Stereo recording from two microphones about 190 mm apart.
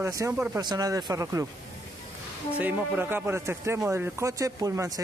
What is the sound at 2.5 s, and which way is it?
Speech, 10° right (ahead or behind).